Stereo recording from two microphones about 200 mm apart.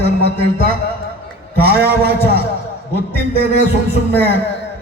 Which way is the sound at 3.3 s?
50° right (ahead or behind).